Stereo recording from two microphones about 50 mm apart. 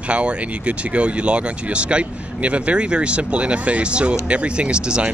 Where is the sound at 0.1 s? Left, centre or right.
Right.